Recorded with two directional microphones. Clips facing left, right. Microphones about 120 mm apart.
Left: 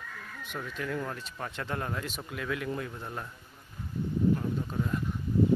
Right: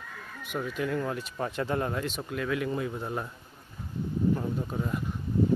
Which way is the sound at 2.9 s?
20° right (ahead or behind).